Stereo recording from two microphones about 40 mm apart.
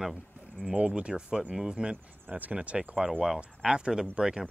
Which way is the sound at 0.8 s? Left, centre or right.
Right.